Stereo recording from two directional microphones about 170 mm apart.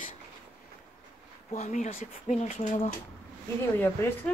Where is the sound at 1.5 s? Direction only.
45° left (ahead or behind).